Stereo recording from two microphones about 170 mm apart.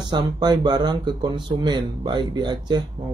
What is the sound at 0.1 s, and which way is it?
Speech, 25° right (ahead or behind).